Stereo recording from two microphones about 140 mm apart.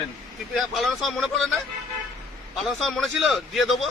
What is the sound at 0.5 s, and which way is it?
A man's voice, centre (ahead or behind).